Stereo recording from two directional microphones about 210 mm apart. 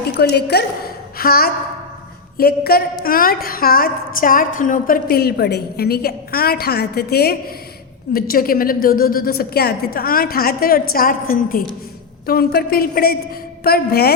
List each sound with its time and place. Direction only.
0.1 s a woman's voice: 50° left (ahead or behind)